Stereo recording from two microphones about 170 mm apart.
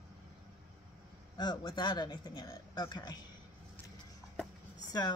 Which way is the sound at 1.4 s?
25° left (ahead or behind).